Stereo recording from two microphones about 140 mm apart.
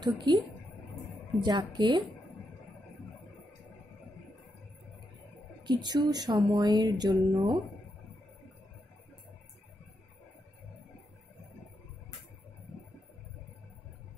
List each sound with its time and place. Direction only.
0.0 s speech: 30° right (ahead or behind)
1.4 s speech: 30° right (ahead or behind)
5.6 s speech: 30° right (ahead or behind)